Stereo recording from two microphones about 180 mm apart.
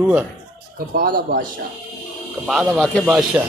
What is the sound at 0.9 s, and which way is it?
Speech, 55° right (ahead or behind).